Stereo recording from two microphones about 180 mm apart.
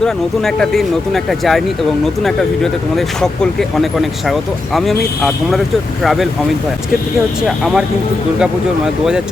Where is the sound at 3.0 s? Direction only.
Centre (ahead or behind).